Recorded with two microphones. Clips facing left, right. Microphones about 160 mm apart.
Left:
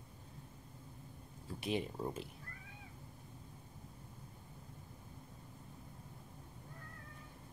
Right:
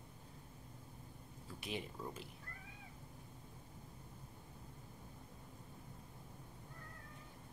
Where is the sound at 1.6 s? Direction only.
25° left (ahead or behind).